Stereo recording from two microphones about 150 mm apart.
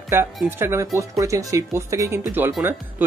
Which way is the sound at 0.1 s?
15° right (ahead or behind).